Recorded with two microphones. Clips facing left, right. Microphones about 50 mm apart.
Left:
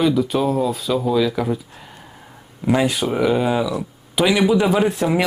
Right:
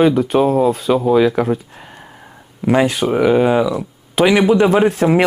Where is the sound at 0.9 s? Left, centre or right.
Right.